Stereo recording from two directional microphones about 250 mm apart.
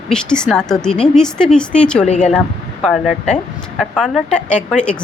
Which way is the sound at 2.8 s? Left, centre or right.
Centre.